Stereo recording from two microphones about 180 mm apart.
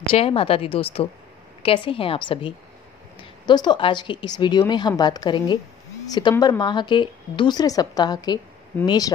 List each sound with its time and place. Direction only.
0.1 s a woman's voice: 30° left (ahead or behind)
6.3 s speech: 15° left (ahead or behind)
6.6 s speech: 25° left (ahead or behind)